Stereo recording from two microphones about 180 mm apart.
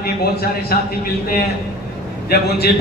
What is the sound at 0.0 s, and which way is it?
Speech, 60° left (ahead or behind).